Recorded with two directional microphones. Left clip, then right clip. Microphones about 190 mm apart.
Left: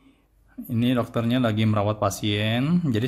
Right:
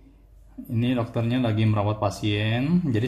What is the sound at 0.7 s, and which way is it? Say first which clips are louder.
Speech: left 2 dB; 30° left (ahead or behind).